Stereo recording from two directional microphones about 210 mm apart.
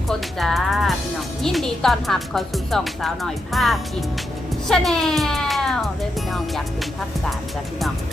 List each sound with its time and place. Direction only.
0.1 s music: centre (ahead or behind)
1.4 s speech: centre (ahead or behind)